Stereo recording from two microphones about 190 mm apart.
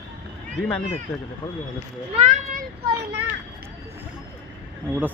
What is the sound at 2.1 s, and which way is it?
Speech, 35° right (ahead or behind).